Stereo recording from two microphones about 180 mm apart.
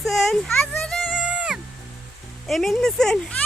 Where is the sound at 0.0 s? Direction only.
Centre (ahead or behind).